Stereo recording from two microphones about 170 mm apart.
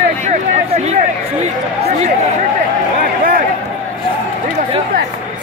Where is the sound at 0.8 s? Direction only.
40° right (ahead or behind).